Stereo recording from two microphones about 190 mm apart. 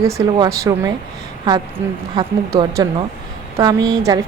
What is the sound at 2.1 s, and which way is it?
Speech, 20° right (ahead or behind).